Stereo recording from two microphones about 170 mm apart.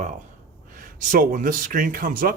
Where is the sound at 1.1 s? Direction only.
55° right (ahead or behind).